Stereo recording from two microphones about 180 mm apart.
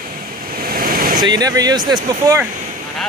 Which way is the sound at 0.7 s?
50° right (ahead or behind).